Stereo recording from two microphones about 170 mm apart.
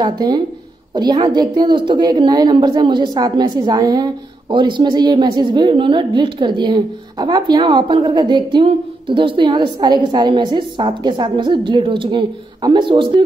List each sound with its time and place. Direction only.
0.0 s a woman's voice: 25° right (ahead or behind)